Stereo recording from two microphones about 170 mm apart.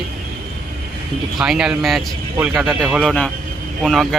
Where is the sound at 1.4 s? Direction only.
5° right (ahead or behind).